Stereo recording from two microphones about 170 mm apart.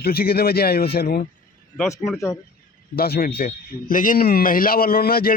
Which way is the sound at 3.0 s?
65° left (ahead or behind).